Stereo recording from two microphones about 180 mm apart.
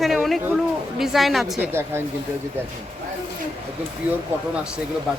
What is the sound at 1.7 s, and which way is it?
Speech, 15° right (ahead or behind).